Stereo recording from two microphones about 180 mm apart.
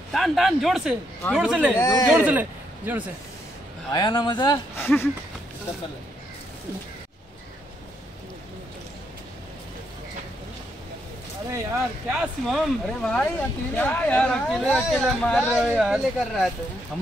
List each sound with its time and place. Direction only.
0.1 s speech: centre (ahead or behind)
1.8 s speech: 15° left (ahead or behind)
2.0 s a man's voice: 5° right (ahead or behind)
3.9 s speech: 25° left (ahead or behind)
4.8 s speech: 10° left (ahead or behind)
12.1 s speech: centre (ahead or behind)